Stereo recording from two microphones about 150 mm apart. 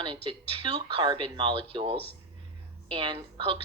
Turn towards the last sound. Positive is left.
turn(degrees=-35)  # may be behind; listen again after turning